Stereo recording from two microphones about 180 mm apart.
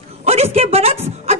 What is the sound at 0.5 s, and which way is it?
Music, 35° right (ahead or behind).